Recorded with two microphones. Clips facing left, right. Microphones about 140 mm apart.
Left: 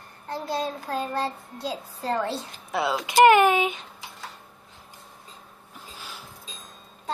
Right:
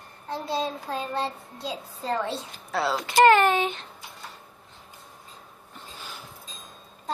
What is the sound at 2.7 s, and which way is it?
Speech, 15° left (ahead or behind).